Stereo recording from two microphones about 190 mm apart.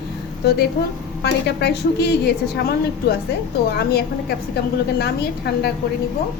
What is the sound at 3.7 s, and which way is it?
A woman's voice, 55° left (ahead or behind).